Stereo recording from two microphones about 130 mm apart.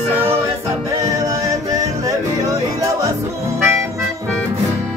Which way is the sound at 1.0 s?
25° right (ahead or behind).